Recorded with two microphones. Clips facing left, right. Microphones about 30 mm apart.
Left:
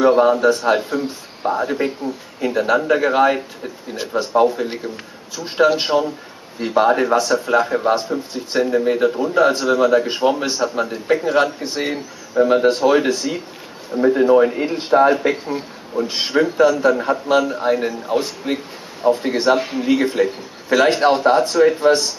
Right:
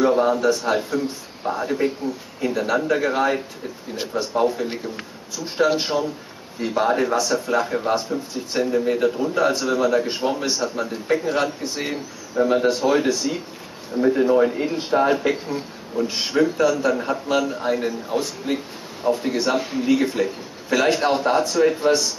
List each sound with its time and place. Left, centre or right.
0.0 s a man's voice: left
5.9 s a man's voice: left
7.9 s a man's voice: left
16.1 s a man's voice: left